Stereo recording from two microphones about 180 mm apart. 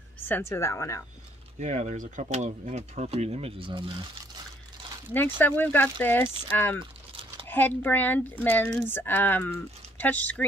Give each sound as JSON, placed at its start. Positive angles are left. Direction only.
{"t": 0.3, "sound": "speech", "side_deg": 15}
{"t": 1.6, "sound": "speech", "side_deg": -40}
{"t": 5.4, "sound": "speech", "side_deg": 10}